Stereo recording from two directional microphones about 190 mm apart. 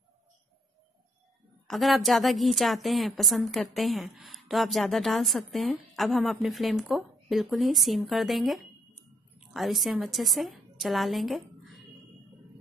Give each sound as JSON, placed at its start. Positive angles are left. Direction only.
{"t": 1.7, "sound": "a woman's voice", "side_deg": 0}